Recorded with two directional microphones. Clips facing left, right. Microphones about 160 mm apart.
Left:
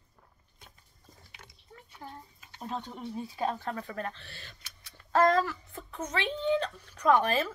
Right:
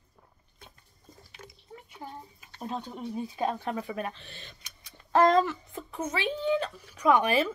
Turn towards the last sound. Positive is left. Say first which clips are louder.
# right 2 dB
turn(degrees=-10)  # may be behind; listen again after turning